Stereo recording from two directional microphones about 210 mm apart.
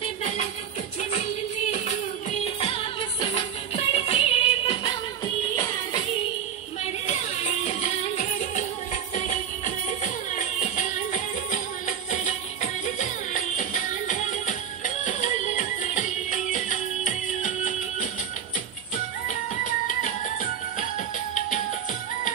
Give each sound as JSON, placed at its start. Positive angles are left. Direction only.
{"t": 0.0, "sound": "music", "side_deg": 30}
{"t": 2.4, "sound": "music", "side_deg": 25}
{"t": 7.1, "sound": "music", "side_deg": 30}
{"t": 12.8, "sound": "music", "side_deg": 35}
{"t": 19.2, "sound": "music", "side_deg": 35}